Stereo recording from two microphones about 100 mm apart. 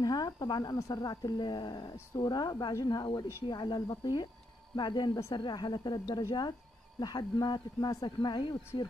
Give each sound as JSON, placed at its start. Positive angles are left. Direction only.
{"t": 0.0, "sound": "speech", "side_deg": 40}